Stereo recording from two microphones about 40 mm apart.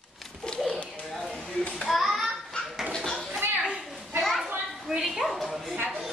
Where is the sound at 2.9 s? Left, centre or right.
Centre.